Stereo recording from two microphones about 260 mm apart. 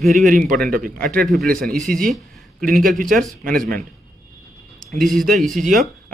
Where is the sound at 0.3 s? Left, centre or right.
Right.